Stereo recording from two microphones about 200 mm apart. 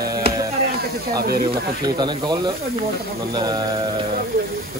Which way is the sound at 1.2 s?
50° right (ahead or behind).